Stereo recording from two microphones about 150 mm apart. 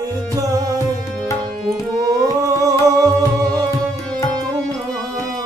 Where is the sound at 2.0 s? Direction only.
20° right (ahead or behind).